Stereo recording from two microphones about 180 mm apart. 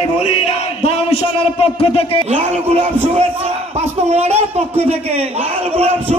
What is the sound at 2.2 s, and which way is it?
Speech, 35° right (ahead or behind).